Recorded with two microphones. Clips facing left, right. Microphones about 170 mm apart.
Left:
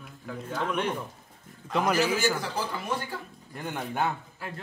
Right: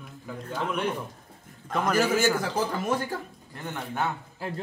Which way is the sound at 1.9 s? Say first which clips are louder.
Right 5 dB; 50° right (ahead or behind).